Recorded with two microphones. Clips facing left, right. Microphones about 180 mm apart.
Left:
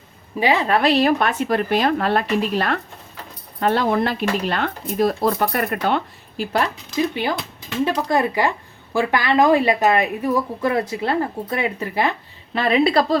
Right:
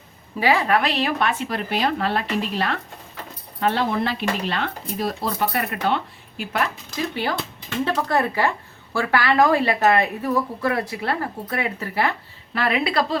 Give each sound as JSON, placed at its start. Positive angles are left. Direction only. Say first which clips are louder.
{"t": 0.3, "sound": "speech", "louder": "left 1 dB", "side_deg": 20}
{"t": 6.3, "sound": "a woman's voice", "louder": "left 4 dB", "side_deg": 35}
{"t": 7.1, "sound": "a woman's voice", "louder": "left 2 dB", "side_deg": 15}